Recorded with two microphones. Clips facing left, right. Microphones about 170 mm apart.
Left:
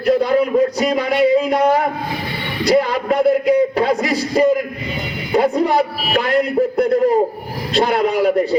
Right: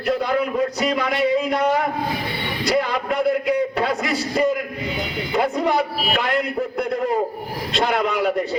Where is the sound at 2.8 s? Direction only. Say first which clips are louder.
Left 4 dB; 40° left (ahead or behind).